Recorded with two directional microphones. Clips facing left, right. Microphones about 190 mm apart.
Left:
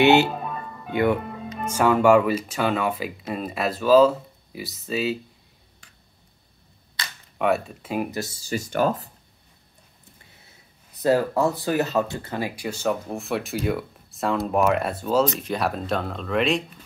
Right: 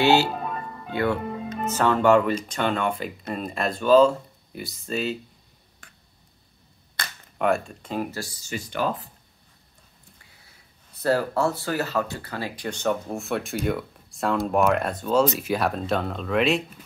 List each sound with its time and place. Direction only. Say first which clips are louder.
0.0 s speech: left 3 dB; 20° left (ahead or behind); by 5.2 s 5° left (ahead or behind)
5.8 s finger snapping: right 5 dB; 55° right (ahead or behind)
7.0 s a sound: right 1 dB; 50° right (ahead or behind)
7.3 s speech: left 1 dB; centre (ahead or behind); by 9.1 s 45° left (ahead or behind)
11.0 s speech: left 2 dB; 15° left (ahead or behind); by 16.8 s 5° right (ahead or behind)